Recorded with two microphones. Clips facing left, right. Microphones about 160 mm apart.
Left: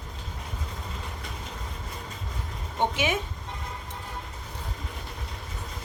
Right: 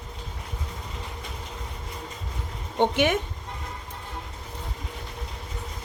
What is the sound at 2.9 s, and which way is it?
Speech, 60° right (ahead or behind).